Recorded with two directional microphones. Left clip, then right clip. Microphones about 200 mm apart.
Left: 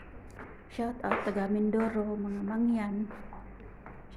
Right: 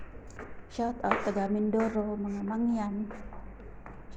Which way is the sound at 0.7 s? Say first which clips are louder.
Right 2 dB; centre (ahead or behind).